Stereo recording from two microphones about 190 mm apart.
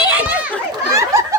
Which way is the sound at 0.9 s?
15° right (ahead or behind).